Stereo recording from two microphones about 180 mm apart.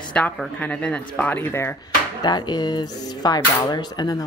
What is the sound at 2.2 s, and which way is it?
Speech, 25° left (ahead or behind).